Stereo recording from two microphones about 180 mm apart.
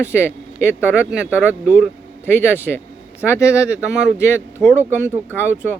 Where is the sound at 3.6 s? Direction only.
5° right (ahead or behind).